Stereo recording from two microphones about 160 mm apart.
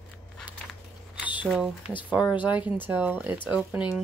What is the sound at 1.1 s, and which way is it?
Squish, 10° right (ahead or behind).